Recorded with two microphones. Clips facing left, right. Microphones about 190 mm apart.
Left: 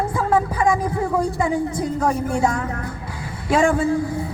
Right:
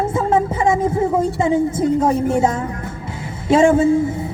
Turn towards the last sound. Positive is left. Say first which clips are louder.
# right 6 dB
turn(degrees=-20)  # may be behind; listen again after turning